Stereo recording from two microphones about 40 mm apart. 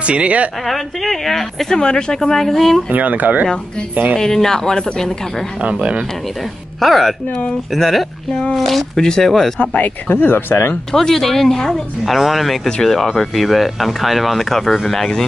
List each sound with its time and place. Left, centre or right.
0.0 s speech: right
0.7 s speech: centre
1.7 s speech: centre
2.1 s speech: centre
2.9 s speech: right
4.2 s speech: centre
5.6 s speech: right
6.8 s speech: centre
9.0 s speech: centre
9.6 s speech: left
10.1 s speech: left
10.9 s speech: centre
12.0 s speech: centre